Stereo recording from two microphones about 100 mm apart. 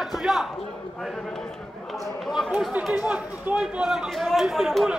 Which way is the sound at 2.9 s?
15° right (ahead or behind).